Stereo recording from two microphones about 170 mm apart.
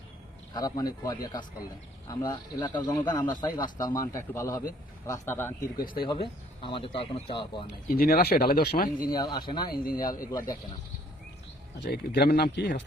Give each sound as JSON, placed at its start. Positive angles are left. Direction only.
{"t": 0.5, "sound": "speech", "side_deg": 20}
{"t": 6.0, "sound": "speech", "side_deg": 30}
{"t": 7.9, "sound": "speech", "side_deg": 60}
{"t": 9.5, "sound": "speech", "side_deg": 25}
{"t": 9.7, "sound": "speech", "side_deg": 60}
{"t": 11.8, "sound": "speech", "side_deg": 75}